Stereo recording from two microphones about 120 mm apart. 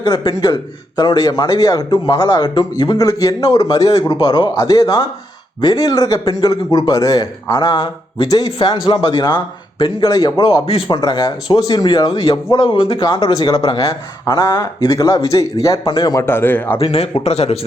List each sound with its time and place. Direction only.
0.0 s speech: 35° left (ahead or behind)
3.1 s speech: 30° left (ahead or behind)
8.7 s speech: 50° left (ahead or behind)
12.0 s speech: 50° left (ahead or behind); by 16.2 s 35° left (ahead or behind)
16.2 s a man's voice: 20° left (ahead or behind)
16.7 s a man's voice: 55° left (ahead or behind)